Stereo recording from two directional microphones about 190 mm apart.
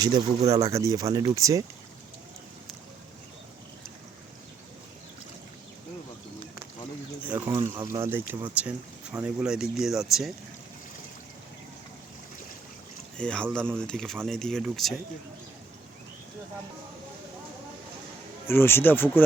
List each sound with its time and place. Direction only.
0.0 s speech: 20° right (ahead or behind)
7.3 s a sound: 20° right (ahead or behind)
8.6 s speech: 5° right (ahead or behind)
13.1 s speech: 5° left (ahead or behind)
18.4 s speech: 10° left (ahead or behind)